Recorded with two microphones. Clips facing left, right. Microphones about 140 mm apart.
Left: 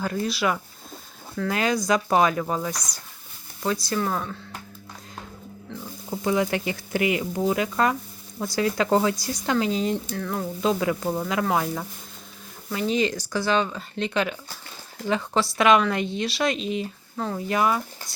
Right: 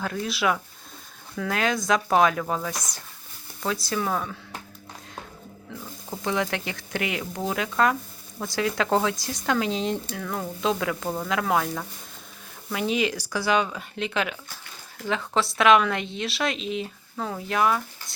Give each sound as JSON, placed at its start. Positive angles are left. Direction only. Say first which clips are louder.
{"t": 0.0, "sound": "speech", "louder": "left 1 dB", "side_deg": 0}
{"t": 6.1, "sound": "speech", "louder": "left 3 dB", "side_deg": 5}
{"t": 12.7, "sound": "speech", "louder": "left 1 dB", "side_deg": -5}